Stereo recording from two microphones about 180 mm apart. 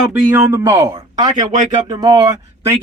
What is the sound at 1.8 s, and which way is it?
Speech, 20° right (ahead or behind).